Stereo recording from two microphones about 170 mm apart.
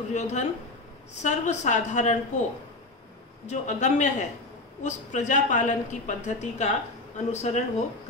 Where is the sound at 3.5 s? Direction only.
45° left (ahead or behind).